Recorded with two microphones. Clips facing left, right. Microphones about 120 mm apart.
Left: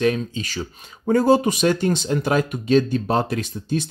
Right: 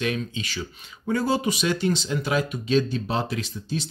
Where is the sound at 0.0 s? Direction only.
35° left (ahead or behind).